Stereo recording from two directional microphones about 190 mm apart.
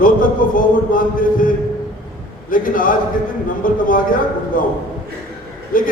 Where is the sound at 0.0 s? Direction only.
45° left (ahead or behind).